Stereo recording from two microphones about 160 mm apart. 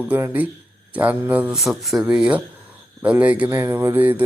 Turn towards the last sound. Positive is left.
turn(degrees=-10)  # may be behind; listen again after turning